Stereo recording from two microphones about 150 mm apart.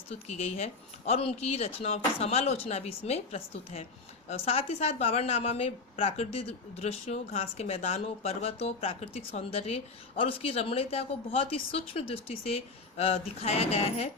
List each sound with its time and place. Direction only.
0.3 s a woman's voice: 45° left (ahead or behind)